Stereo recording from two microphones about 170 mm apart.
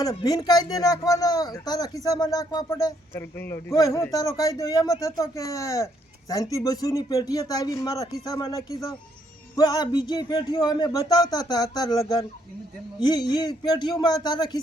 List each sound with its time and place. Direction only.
0.0 s speech: 20° left (ahead or behind)